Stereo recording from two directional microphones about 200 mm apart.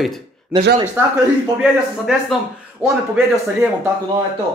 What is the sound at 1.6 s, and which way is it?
Speech, 5° right (ahead or behind).